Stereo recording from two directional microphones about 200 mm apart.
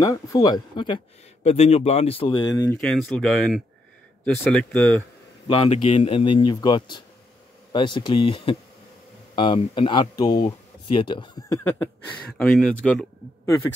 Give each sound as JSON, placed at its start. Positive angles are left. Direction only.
{"t": 0.0, "sound": "speech", "side_deg": 20}
{"t": 2.8, "sound": "speech", "side_deg": 0}
{"t": 5.5, "sound": "speech", "side_deg": 30}